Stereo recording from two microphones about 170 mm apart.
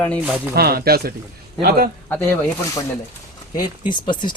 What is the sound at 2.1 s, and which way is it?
Speech, 10° left (ahead or behind).